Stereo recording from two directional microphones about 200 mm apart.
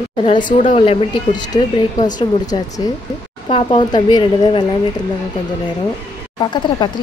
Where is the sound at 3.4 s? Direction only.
25° left (ahead or behind).